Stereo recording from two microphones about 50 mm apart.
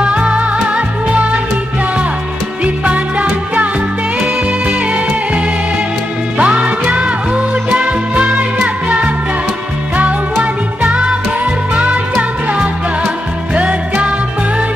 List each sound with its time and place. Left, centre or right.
0.0 s music: right
2.6 s music: right
4.6 s music: right
10.4 s music: right
13.6 s music: right